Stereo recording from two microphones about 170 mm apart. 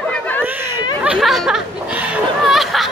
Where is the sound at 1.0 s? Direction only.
5° right (ahead or behind).